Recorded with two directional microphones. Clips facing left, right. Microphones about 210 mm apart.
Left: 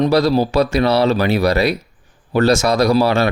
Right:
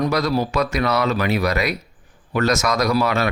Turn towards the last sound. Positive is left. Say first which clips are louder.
# left 5 dB
turn(degrees=30)  # may be behind; listen again after turning